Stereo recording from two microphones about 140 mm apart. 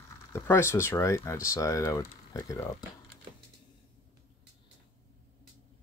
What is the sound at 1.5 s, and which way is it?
Speech, 25° left (ahead or behind).